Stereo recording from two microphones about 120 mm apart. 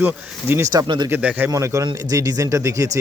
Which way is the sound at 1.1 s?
15° right (ahead or behind).